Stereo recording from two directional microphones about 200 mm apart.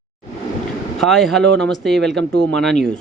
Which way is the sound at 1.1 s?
Centre (ahead or behind).